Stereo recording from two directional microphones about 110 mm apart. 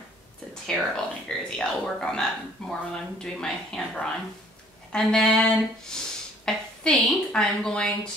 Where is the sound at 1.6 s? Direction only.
5° left (ahead or behind).